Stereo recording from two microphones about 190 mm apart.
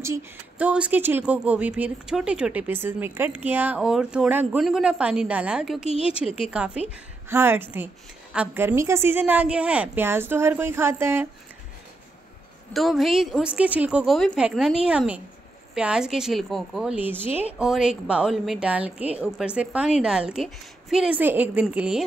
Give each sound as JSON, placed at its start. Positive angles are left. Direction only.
{"t": 0.0, "sound": "speech", "side_deg": -10}
{"t": 5.9, "sound": "a woman's voice", "side_deg": 30}
{"t": 6.1, "sound": "a woman's voice", "side_deg": -5}
{"t": 12.7, "sound": "a woman's voice", "side_deg": 0}